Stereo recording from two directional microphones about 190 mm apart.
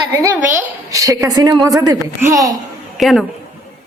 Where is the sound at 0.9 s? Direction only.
15° right (ahead or behind).